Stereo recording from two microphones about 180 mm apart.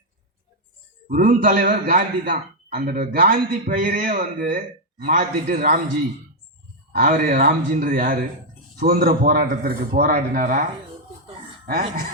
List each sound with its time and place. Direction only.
1.0 s a man's voice: 50° right (ahead or behind)
6.9 s a man's voice: 55° right (ahead or behind)